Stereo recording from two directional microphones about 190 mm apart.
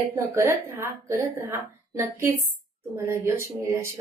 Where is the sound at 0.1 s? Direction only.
15° right (ahead or behind).